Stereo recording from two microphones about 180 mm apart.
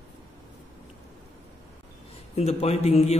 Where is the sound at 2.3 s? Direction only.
35° left (ahead or behind).